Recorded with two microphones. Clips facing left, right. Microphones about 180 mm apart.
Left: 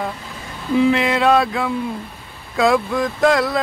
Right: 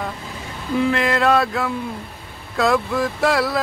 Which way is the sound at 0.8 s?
5° left (ahead or behind).